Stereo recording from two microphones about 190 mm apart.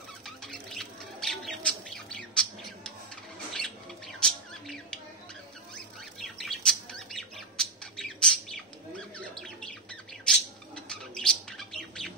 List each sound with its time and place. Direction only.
0.5 s bird: centre (ahead or behind)
3.6 s a sound: 5° left (ahead or behind)
6.1 s squawk: centre (ahead or behind)
10.3 s bird: 5° left (ahead or behind)